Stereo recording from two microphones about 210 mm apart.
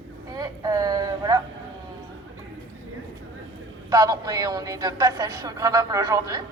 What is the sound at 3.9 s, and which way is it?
Speech, 15° right (ahead or behind).